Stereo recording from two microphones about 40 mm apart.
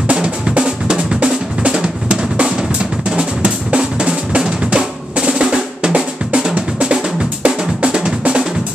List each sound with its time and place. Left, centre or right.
0.1 s drum: right